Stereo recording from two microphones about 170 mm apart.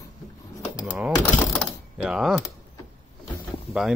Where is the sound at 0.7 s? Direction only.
5° right (ahead or behind).